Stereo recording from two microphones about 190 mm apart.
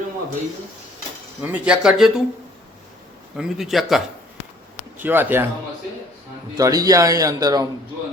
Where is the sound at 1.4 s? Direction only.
5° right (ahead or behind).